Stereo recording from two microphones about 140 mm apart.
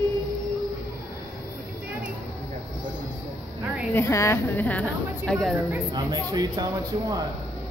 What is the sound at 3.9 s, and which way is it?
Speech, 20° left (ahead or behind).